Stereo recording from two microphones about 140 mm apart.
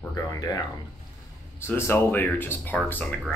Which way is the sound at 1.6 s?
15° left (ahead or behind).